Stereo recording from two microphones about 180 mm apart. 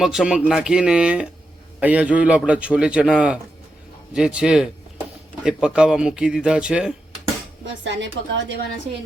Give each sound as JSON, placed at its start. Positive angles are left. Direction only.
{"t": 0.0, "sound": "a man's voice", "side_deg": -5}
{"t": 7.6, "sound": "a woman's voice", "side_deg": -90}